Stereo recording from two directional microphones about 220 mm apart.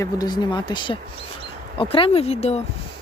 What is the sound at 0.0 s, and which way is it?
Speech, 20° left (ahead or behind).